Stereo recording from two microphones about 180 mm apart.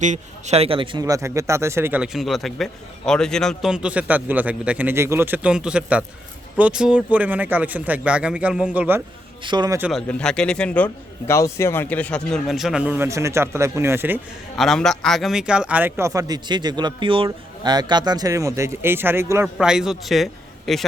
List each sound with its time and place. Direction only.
0.0 s speech: 40° right (ahead or behind); by 9.0 s 5° right (ahead or behind)
9.4 s a man's voice: 25° right (ahead or behind)
9.9 s a man's voice: 5° left (ahead or behind); by 14.2 s 10° right (ahead or behind)
14.6 s speech: centre (ahead or behind); by 19.5 s 15° right (ahead or behind)
19.5 s a man's voice: 5° right (ahead or behind)